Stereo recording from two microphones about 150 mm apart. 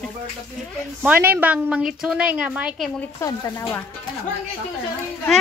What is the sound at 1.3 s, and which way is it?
A woman's voice, 10° right (ahead or behind).